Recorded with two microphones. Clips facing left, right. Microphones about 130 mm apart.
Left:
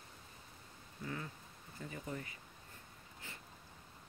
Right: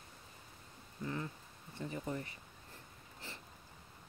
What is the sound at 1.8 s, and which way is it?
Speech, 25° right (ahead or behind).